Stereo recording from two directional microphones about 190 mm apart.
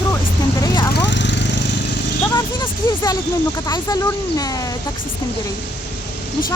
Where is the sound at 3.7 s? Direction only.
15° left (ahead or behind).